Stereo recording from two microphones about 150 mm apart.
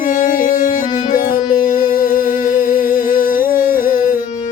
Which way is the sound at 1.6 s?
65° left (ahead or behind).